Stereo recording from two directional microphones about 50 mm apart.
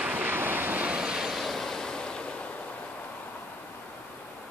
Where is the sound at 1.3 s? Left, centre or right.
Centre; by 2.5 s left.